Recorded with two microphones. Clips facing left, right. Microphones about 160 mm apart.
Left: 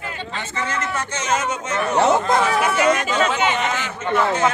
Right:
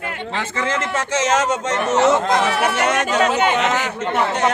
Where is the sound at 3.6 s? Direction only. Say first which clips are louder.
Right 4 dB; 70° right (ahead or behind).